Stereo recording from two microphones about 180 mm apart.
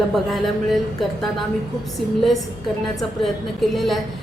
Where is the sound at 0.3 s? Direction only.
Centre (ahead or behind).